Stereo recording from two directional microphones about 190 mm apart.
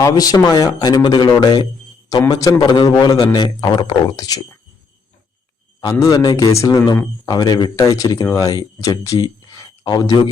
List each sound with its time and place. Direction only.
0.0 s a man's voice: 20° left (ahead or behind)
5.8 s a man's voice: 20° left (ahead or behind)